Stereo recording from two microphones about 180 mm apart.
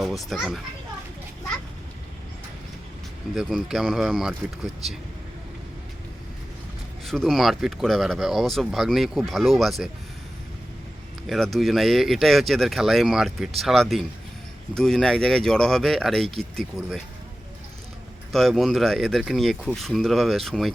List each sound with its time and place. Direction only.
0.0 s a child's voice: centre (ahead or behind)
3.3 s speech: centre (ahead or behind)
7.0 s speech: centre (ahead or behind)
11.3 s speech: centre (ahead or behind)
18.3 s speech: centre (ahead or behind)